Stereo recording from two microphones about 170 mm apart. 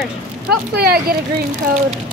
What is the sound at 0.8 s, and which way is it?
Speech, 65° right (ahead or behind).